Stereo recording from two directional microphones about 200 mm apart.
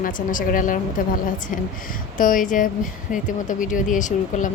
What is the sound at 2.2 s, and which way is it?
Speech, 40° left (ahead or behind).